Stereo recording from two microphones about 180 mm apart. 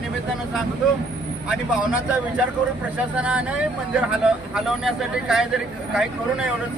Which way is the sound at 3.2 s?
5° right (ahead or behind).